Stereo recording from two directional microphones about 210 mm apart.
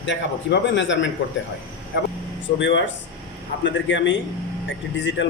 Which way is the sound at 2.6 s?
60° left (ahead or behind).